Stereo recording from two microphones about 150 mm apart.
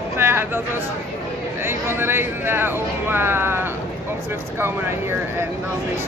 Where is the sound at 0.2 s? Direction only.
15° right (ahead or behind).